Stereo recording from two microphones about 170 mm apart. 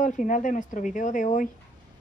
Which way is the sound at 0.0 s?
50° left (ahead or behind).